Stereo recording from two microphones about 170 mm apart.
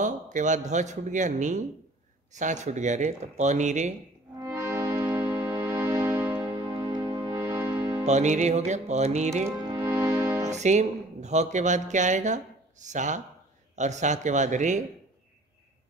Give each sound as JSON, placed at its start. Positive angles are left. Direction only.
{"t": 0.0, "sound": "a man's voice", "side_deg": -45}
{"t": 4.4, "sound": "music", "side_deg": -20}
{"t": 8.0, "sound": "music", "side_deg": -40}
{"t": 9.6, "sound": "music", "side_deg": -25}
{"t": 10.5, "sound": "a man's voice", "side_deg": -45}